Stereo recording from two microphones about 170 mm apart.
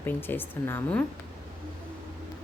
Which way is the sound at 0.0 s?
10° left (ahead or behind).